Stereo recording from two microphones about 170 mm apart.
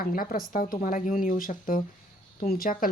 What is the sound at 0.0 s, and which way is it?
Speech, 55° left (ahead or behind).